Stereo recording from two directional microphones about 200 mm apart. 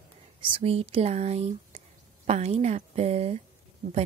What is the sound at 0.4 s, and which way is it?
Speech, 25° right (ahead or behind).